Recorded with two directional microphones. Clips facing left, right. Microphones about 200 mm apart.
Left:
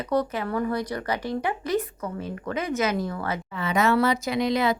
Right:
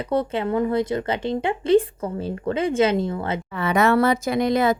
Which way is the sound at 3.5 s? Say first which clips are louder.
Right 4 dB; 60° right (ahead or behind).